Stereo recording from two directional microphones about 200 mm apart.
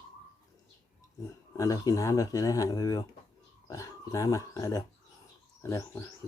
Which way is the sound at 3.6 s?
15° left (ahead or behind).